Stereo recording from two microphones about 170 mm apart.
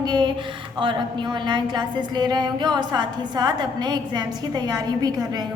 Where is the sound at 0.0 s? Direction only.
25° right (ahead or behind).